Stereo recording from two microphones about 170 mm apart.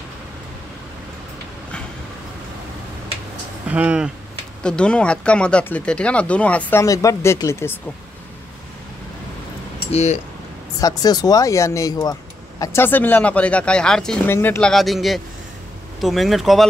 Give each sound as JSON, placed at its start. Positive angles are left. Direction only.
{"t": 3.6, "sound": "speech", "side_deg": -10}
{"t": 4.6, "sound": "speech", "side_deg": 5}
{"t": 9.8, "sound": "speech", "side_deg": 40}
{"t": 10.8, "sound": "speech", "side_deg": 20}